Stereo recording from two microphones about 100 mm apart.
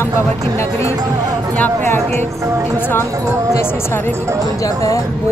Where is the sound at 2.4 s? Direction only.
30° right (ahead or behind).